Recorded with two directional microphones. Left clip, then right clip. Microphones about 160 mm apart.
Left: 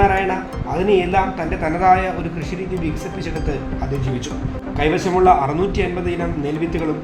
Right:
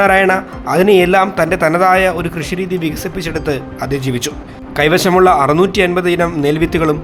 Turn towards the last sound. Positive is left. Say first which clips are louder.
# right 8 dB
turn(degrees=-55)  # may be behind; listen again after turning